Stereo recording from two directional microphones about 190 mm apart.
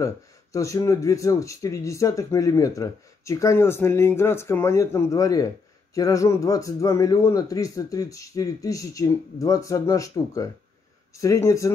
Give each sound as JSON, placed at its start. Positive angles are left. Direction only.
{"t": 0.0, "sound": "speech", "side_deg": 15}